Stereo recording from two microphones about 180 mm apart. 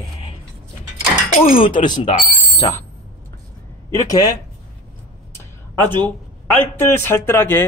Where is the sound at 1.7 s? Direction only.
25° left (ahead or behind).